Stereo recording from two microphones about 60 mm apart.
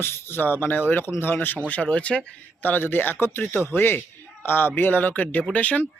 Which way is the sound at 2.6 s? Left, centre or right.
Left.